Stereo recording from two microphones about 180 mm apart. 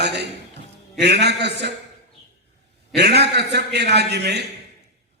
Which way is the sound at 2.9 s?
65° right (ahead or behind).